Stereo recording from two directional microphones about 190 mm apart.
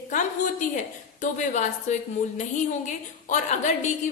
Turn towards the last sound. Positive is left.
turn(degrees=40)  # may be behind; listen again after turning